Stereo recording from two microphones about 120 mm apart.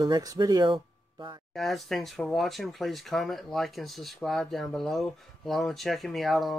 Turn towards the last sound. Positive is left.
turn(degrees=0)  # may be behind; listen again after turning